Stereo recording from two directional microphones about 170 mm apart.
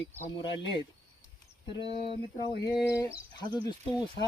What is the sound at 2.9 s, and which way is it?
Speech, 15° left (ahead or behind).